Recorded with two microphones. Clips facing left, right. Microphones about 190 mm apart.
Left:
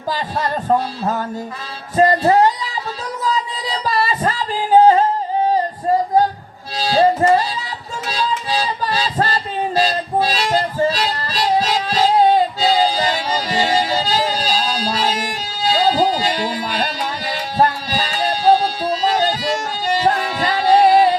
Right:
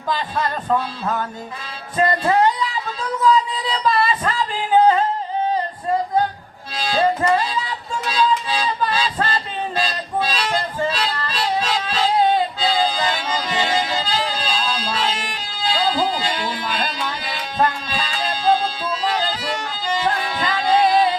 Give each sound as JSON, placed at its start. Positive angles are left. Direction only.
{"t": 0.1, "sound": "speech", "side_deg": 40}
{"t": 3.2, "sound": "music", "side_deg": 35}
{"t": 6.7, "sound": "music", "side_deg": 35}